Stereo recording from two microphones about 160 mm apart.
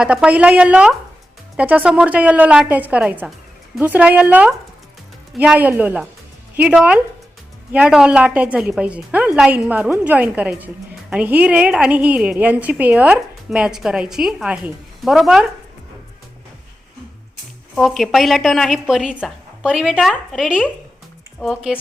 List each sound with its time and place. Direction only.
0.0 s a woman's voice: 5° right (ahead or behind)
17.7 s a woman's voice: centre (ahead or behind)